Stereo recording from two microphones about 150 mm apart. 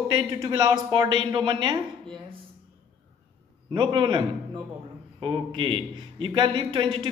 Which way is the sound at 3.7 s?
35° right (ahead or behind).